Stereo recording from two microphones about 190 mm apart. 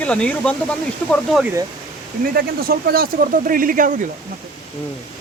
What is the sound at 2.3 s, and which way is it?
Speech, 55° right (ahead or behind).